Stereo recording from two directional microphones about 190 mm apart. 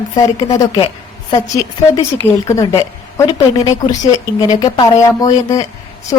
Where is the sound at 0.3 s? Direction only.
20° left (ahead or behind).